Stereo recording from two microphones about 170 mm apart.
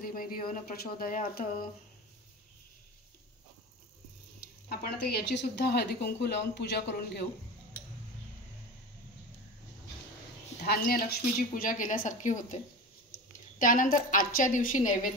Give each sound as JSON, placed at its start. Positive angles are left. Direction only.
{"t": 0.0, "sound": "speech", "side_deg": 55}
{"t": 4.6, "sound": "speech", "side_deg": 70}
{"t": 10.6, "sound": "a woman's voice", "side_deg": 65}